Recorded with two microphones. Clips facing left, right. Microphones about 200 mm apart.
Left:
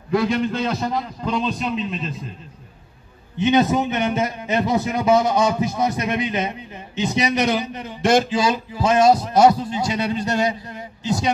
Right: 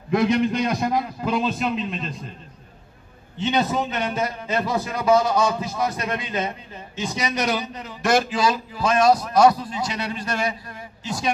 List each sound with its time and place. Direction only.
0.1 s a man's voice: 20° right (ahead or behind); by 2.2 s centre (ahead or behind)
3.3 s a man's voice: 20° left (ahead or behind)